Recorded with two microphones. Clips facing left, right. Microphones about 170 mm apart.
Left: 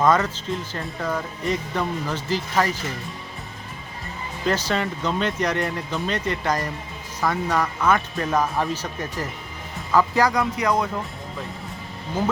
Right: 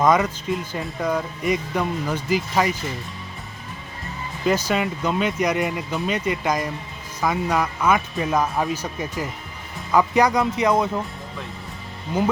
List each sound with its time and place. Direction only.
0.0 s speech: 10° right (ahead or behind)
4.4 s speech: 10° right (ahead or behind)